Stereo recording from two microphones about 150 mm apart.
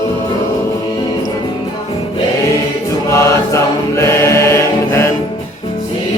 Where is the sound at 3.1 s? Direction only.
20° left (ahead or behind).